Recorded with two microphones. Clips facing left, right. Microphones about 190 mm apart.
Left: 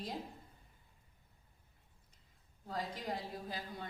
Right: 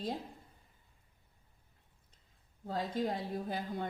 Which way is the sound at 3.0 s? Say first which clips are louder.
Right 6 dB; 55° right (ahead or behind).